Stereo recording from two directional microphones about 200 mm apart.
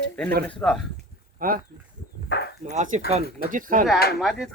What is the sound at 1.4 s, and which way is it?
Speech, 45° right (ahead or behind).